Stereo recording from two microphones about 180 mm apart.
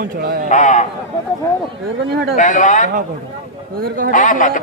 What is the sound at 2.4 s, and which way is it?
Speech, 45° left (ahead or behind).